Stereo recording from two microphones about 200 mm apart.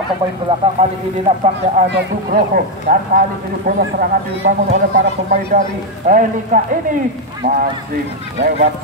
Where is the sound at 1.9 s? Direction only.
45° right (ahead or behind).